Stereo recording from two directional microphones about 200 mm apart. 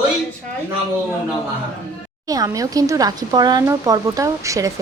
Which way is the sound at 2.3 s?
20° right (ahead or behind).